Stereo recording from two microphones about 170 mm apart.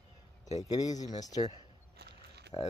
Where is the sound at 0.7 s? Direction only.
20° left (ahead or behind).